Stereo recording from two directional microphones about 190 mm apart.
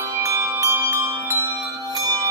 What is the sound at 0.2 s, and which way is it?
Bell, 15° right (ahead or behind).